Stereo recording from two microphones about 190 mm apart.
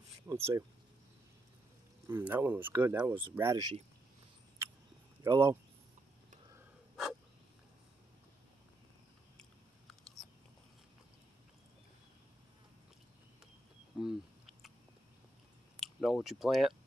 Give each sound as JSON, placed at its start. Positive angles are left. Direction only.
{"t": 0.3, "sound": "speech", "side_deg": -15}
{"t": 2.0, "sound": "speech", "side_deg": -10}
{"t": 5.2, "sound": "speech", "side_deg": -15}
{"t": 13.9, "sound": "a sound", "side_deg": 0}
{"t": 15.8, "sound": "speech", "side_deg": 0}